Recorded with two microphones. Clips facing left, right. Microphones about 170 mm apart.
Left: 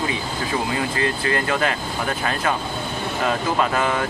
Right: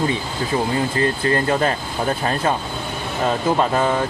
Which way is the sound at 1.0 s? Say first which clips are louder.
Right 4 dB; 35° right (ahead or behind).